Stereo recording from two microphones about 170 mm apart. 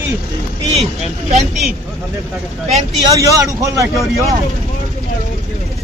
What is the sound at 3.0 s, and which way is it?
A man's voice, 20° right (ahead or behind).